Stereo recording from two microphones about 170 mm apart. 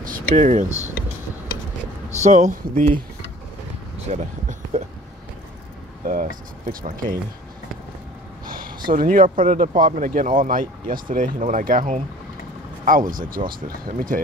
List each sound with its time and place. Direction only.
0.0 s a sound: 50° right (ahead or behind)
2.0 s speech: 45° right (ahead or behind)
4.1 s speech: 45° right (ahead or behind)
6.0 s speech: 55° right (ahead or behind)
8.5 s a sound: 55° right (ahead or behind)
8.9 s speech: 50° right (ahead or behind)